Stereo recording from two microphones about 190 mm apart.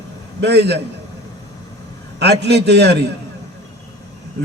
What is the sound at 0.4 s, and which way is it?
Speech, 60° right (ahead or behind).